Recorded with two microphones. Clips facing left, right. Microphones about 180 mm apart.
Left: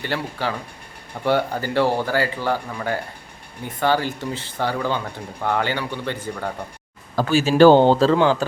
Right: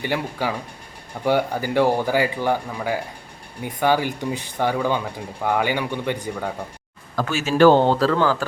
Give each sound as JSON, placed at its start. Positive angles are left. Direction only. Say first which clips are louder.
{"t": 0.0, "sound": "speech", "louder": "right 1 dB", "side_deg": -15}
{"t": 7.2, "sound": "speech", "louder": "left 3 dB", "side_deg": 35}